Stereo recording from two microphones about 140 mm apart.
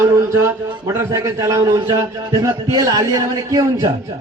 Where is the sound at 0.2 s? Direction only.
20° right (ahead or behind).